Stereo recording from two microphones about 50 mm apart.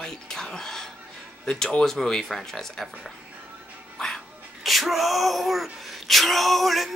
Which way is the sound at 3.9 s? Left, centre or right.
Centre.